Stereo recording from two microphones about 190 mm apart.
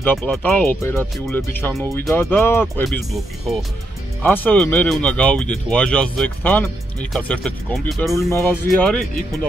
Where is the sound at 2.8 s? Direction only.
Centre (ahead or behind).